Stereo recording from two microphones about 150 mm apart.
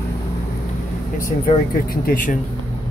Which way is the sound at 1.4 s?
70° left (ahead or behind).